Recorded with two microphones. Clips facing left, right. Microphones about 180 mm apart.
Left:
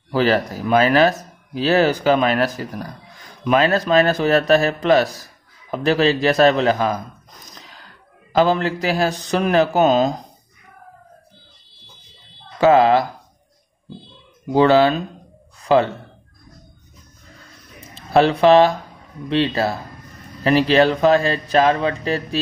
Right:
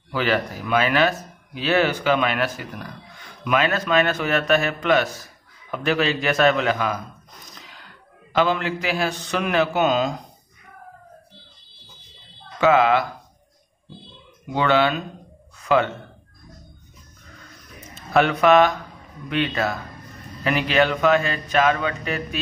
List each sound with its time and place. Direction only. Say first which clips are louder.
0.1 s speech: left 5 dB; 35° left (ahead or behind)
7.5 s gasp: left 2 dB; 40° left (ahead or behind)
8.3 s speech: left 4 dB; 35° left (ahead or behind)
12.5 s speech: left 4 dB; 35° left (ahead or behind)
14.5 s a man's voice: left 6 dB; 35° left (ahead or behind)
17.7 s speech: left 4 dB; 30° left (ahead or behind)